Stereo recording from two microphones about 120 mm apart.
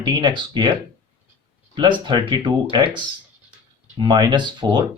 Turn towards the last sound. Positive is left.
turn(degrees=-40)  # may be behind; listen again after turning